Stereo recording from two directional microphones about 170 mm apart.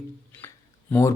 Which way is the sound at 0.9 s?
10° left (ahead or behind).